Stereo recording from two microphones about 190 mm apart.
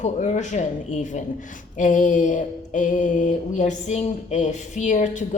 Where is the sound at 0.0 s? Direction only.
40° left (ahead or behind).